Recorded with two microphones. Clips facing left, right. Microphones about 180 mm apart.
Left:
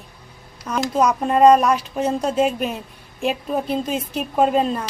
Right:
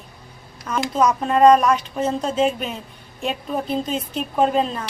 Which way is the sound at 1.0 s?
10° left (ahead or behind).